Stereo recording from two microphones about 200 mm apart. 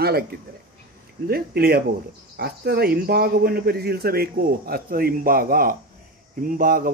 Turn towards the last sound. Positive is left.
turn(degrees=-45)  # may be behind; listen again after turning